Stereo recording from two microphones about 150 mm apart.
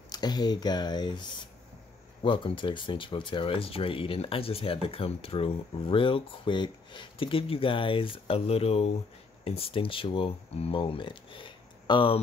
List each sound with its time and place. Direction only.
0.1 s speech: 25° left (ahead or behind)